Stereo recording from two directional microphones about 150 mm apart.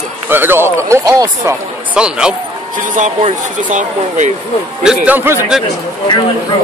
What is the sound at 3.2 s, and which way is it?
Speech, 50° right (ahead or behind).